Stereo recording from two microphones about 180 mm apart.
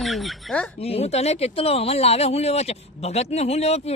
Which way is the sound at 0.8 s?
35° left (ahead or behind).